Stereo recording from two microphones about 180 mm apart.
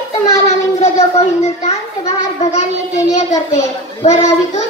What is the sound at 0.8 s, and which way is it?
A child's voice, 35° left (ahead or behind).